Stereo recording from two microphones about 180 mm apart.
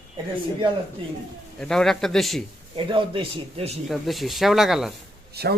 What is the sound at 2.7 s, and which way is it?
Speech, 30° right (ahead or behind).